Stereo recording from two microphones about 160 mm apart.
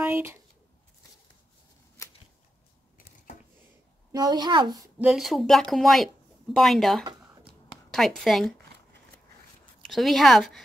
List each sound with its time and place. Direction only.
0.0 s speech: 15° right (ahead or behind)
4.1 s a woman's voice: 25° right (ahead or behind)
4.9 s speech: 5° right (ahead or behind)
9.8 s speech: centre (ahead or behind)